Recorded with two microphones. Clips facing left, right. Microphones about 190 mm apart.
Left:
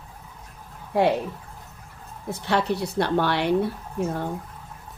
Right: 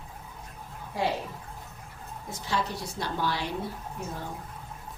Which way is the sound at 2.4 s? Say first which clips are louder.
Left 8 dB; 65° left (ahead or behind).